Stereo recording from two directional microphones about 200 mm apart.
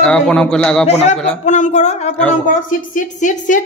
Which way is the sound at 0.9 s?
30° left (ahead or behind).